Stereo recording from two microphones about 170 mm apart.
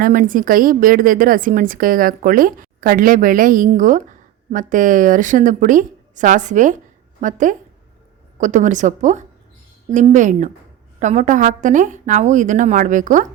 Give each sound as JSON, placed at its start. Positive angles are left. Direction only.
{"t": 0.0, "sound": "a woman's voice", "side_deg": -55}